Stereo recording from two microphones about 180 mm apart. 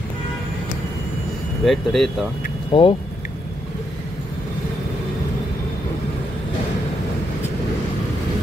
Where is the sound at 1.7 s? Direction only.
Centre (ahead or behind).